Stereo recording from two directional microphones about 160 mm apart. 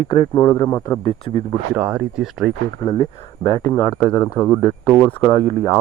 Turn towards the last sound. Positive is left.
turn(degrees=15)  # may be behind; listen again after turning